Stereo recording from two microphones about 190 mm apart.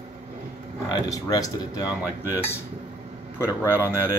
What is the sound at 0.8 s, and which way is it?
Speech, 20° left (ahead or behind).